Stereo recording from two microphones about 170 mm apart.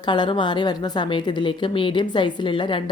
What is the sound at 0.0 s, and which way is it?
A woman's voice, 25° left (ahead or behind).